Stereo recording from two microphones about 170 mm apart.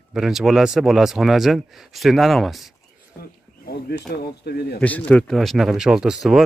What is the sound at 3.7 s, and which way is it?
Speech, 65° left (ahead or behind).